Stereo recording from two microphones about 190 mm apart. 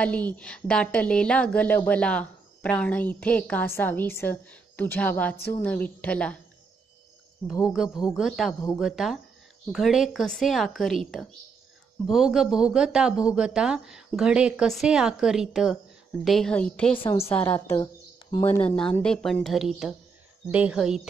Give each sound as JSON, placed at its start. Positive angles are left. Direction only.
{"t": 0.0, "sound": "a woman's voice", "side_deg": 10}
{"t": 7.6, "sound": "a woman's voice", "side_deg": 0}
{"t": 17.0, "sound": "a woman's voice", "side_deg": 25}
{"t": 17.4, "sound": "a woman's voice", "side_deg": 10}